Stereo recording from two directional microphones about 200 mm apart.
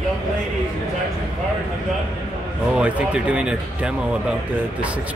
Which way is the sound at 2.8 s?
5° right (ahead or behind).